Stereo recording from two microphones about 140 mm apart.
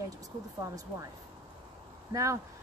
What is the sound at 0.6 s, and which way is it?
Speech, 20° right (ahead or behind).